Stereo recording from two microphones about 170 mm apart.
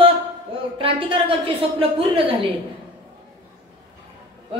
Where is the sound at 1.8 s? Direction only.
30° right (ahead or behind).